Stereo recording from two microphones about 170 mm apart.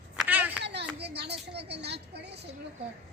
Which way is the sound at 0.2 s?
10° right (ahead or behind).